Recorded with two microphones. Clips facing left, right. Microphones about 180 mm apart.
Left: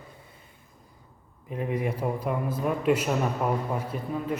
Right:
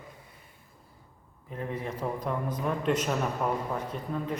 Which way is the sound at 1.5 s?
15° left (ahead or behind).